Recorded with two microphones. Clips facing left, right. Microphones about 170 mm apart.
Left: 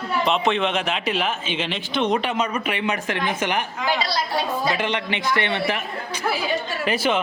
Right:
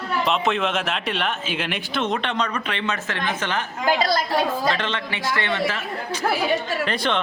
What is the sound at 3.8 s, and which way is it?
Speech, 50° right (ahead or behind).